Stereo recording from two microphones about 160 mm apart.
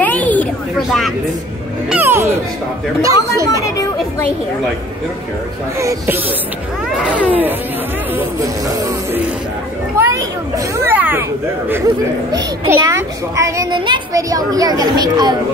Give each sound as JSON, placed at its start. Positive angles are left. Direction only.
{"t": 0.0, "sound": "a sound", "side_deg": 10}
{"t": 1.9, "sound": "a child's voice", "side_deg": -10}
{"t": 5.8, "sound": "speech", "side_deg": -15}
{"t": 7.2, "sound": "a child's voice", "side_deg": -10}
{"t": 12.6, "sound": "a child's voice", "side_deg": -15}